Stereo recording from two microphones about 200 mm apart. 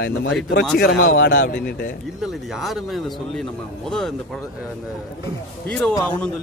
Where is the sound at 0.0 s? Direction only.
60° left (ahead or behind).